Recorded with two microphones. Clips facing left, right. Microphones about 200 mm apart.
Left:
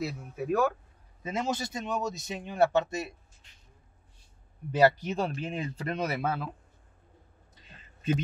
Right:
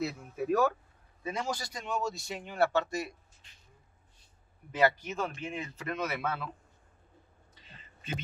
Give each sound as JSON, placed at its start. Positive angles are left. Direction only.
{"t": 0.0, "sound": "speech", "side_deg": 0}
{"t": 1.2, "sound": "a man's voice", "side_deg": 20}
{"t": 4.7, "sound": "speech", "side_deg": 35}